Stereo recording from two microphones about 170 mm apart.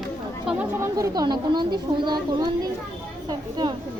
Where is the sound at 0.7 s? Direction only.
20° right (ahead or behind).